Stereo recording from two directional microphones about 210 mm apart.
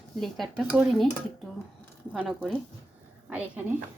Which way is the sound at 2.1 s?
5° right (ahead or behind).